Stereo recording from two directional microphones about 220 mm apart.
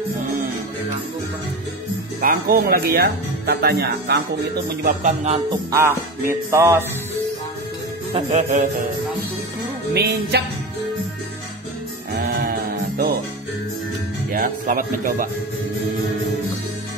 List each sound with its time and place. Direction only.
2.2 s speech: 45° right (ahead or behind)
4.8 s music: 30° right (ahead or behind)
5.5 s music: 15° right (ahead or behind)
8.1 s music: 30° right (ahead or behind)
9.9 s speech: 45° right (ahead or behind)
12.2 s music: 45° right (ahead or behind)
14.3 s speech: 40° right (ahead or behind)